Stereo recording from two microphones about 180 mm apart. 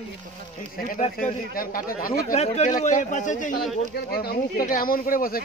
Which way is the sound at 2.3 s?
35° left (ahead or behind).